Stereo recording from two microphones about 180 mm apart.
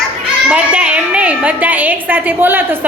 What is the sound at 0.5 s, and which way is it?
A woman's voice, 5° right (ahead or behind).